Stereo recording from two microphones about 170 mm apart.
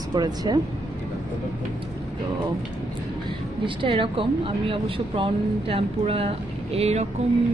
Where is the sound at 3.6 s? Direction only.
30° right (ahead or behind).